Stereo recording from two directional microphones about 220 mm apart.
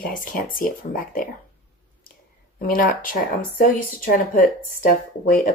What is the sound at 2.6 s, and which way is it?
Speech, 40° left (ahead or behind).